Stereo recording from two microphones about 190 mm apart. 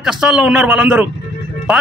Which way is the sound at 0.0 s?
5° right (ahead or behind).